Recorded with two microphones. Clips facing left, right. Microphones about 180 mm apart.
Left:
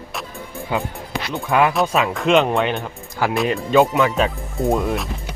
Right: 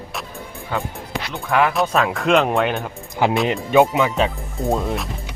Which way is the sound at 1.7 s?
Centre (ahead or behind).